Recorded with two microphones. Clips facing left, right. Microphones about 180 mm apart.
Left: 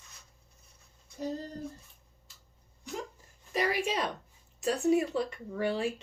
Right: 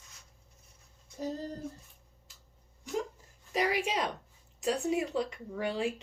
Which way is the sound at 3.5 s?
15° right (ahead or behind).